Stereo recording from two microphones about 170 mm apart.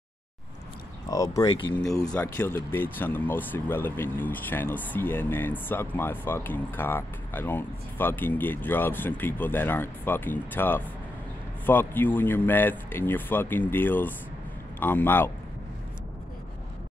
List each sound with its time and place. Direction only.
1.1 s speech: 20° left (ahead or behind)
2.1 s speech: 15° left (ahead or behind)